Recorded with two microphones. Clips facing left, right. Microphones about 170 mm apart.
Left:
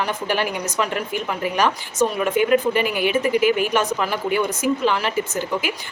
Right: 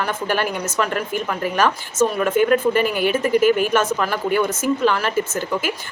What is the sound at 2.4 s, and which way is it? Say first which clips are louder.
Speech: right 2 dB; 45° right (ahead or behind).